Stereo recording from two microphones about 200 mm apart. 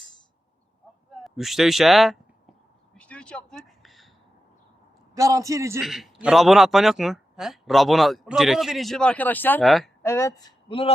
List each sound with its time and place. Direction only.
1.2 s speech: centre (ahead or behind)
2.9 s a sound: 5° left (ahead or behind)
5.1 s a man's voice: 15° right (ahead or behind)
5.8 s a man's voice: centre (ahead or behind)
10.0 s a man's voice: 15° left (ahead or behind)